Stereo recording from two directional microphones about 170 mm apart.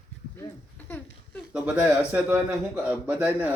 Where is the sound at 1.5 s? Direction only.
5° right (ahead or behind).